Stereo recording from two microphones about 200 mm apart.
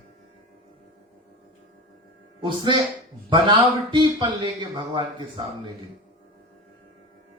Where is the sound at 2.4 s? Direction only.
25° right (ahead or behind).